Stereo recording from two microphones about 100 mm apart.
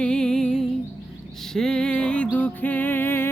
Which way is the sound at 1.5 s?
5° left (ahead or behind).